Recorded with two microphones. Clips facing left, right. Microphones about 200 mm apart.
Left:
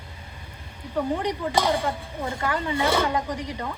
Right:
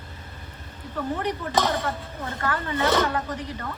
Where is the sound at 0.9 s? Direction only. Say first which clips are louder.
Left 2 dB; 15° left (ahead or behind).